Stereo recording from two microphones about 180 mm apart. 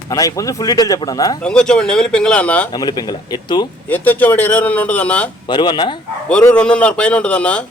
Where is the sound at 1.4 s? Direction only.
5° left (ahead or behind).